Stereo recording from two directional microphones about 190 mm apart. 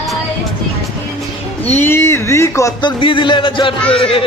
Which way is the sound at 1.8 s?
10° left (ahead or behind).